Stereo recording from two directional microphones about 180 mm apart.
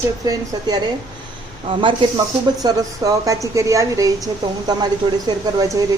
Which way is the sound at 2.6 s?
20° right (ahead or behind).